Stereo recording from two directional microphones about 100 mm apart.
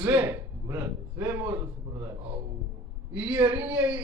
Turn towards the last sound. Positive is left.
turn(degrees=-10)  # may be behind; listen again after turning